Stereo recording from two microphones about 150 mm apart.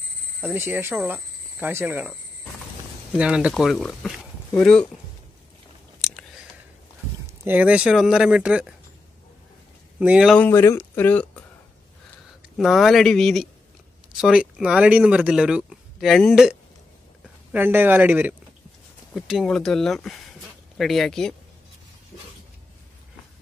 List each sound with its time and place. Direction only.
0.4 s speech: 15° right (ahead or behind); by 4.8 s 5° left (ahead or behind)
6.0 s a sound: centre (ahead or behind)
7.2 s speech: 10° right (ahead or behind)
9.9 s speech: 10° right (ahead or behind)
10.3 s speech: 15° left (ahead or behind)
12.5 s speech: centre (ahead or behind)
17.5 s speech: 15° right (ahead or behind)
19.1 s speech: centre (ahead or behind)